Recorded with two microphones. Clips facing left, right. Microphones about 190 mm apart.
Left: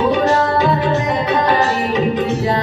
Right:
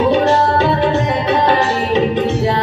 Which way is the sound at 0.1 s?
30° right (ahead or behind).